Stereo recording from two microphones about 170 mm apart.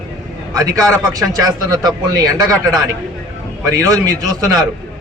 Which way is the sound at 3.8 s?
20° right (ahead or behind).